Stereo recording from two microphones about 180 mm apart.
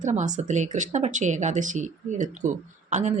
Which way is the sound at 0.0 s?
40° right (ahead or behind).